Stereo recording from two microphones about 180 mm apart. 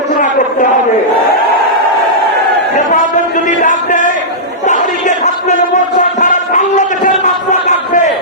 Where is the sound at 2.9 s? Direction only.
45° left (ahead or behind).